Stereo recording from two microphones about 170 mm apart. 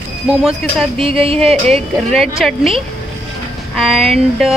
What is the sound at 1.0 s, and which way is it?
Speech, 35° right (ahead or behind).